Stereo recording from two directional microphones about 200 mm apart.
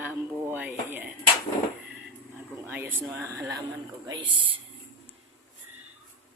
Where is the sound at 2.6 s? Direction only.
10° right (ahead or behind).